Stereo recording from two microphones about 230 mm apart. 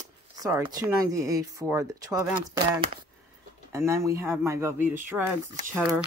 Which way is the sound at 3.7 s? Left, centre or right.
Centre.